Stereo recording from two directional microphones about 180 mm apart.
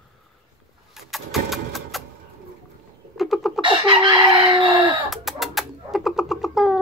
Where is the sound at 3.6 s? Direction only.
25° right (ahead or behind).